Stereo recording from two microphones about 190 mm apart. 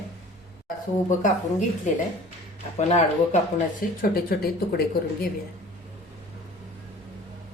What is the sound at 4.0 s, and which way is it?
A woman's voice, 50° left (ahead or behind).